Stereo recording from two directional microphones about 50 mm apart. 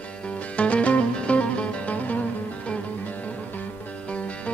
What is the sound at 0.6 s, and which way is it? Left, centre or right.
Music, left.